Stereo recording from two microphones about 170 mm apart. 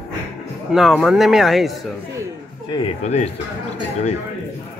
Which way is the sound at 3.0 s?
45° left (ahead or behind).